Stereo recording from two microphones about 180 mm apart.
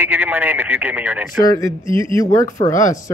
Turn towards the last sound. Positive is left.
turn(degrees=15)  # may be behind; listen again after turning